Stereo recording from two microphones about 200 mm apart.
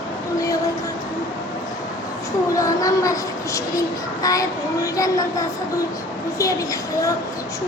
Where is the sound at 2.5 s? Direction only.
15° left (ahead or behind).